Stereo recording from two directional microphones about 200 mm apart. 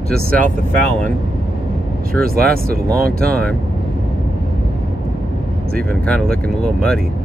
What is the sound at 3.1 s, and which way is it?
Speech, 5° left (ahead or behind).